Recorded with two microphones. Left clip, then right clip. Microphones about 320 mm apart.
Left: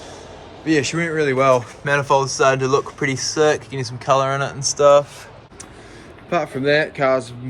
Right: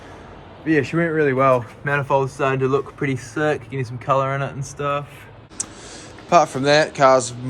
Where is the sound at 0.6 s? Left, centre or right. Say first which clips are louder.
Even; centre.